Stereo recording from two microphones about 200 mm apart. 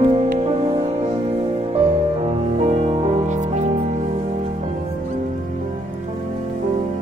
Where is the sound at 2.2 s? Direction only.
30° right (ahead or behind).